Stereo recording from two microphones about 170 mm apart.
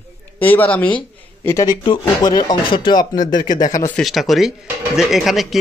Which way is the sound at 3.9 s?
Centre (ahead or behind).